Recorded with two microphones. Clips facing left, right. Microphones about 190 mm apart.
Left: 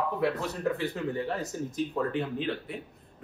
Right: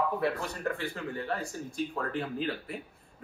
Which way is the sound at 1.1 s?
20° left (ahead or behind).